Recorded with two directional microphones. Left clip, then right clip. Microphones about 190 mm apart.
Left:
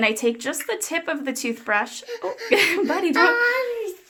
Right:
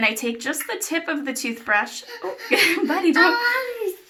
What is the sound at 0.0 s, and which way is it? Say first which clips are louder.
Speech: left 1 dB; 85° left.